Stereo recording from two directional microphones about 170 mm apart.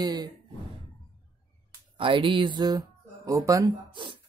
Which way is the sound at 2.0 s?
30° right (ahead or behind).